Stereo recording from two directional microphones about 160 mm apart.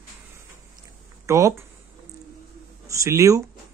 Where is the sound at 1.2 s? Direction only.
20° right (ahead or behind).